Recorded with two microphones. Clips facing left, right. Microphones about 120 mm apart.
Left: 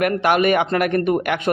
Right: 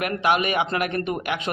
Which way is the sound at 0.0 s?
50° left (ahead or behind).